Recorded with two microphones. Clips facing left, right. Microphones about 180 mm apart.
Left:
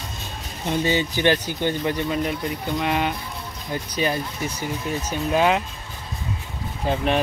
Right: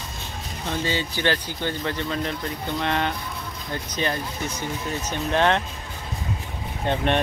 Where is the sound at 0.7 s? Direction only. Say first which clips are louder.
Left 5 dB; 15° left (ahead or behind).